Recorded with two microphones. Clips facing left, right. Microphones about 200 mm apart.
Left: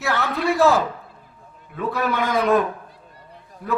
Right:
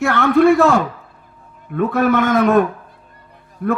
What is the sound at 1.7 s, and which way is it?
Speech, 55° right (ahead or behind).